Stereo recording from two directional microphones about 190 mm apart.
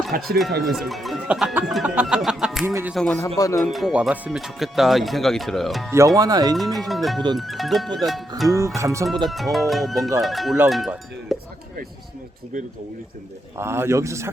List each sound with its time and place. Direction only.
0.1 s speech: 50° right (ahead or behind)
0.6 s speech: centre (ahead or behind)
2.6 s a man's voice: 15° right (ahead or behind)
2.9 s speech: 5° left (ahead or behind)
3.2 s speech: 20° left (ahead or behind)
3.6 s speech: centre (ahead or behind)
6.1 s speech: 20° right (ahead or behind)
6.6 s speech: centre (ahead or behind)
8.4 s a man's voice: 15° right (ahead or behind)
9.2 s speech: centre (ahead or behind)
13.6 s a man's voice: 15° right (ahead or behind)